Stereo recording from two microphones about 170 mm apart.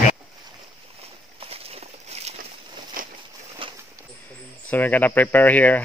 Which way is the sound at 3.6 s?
30° right (ahead or behind).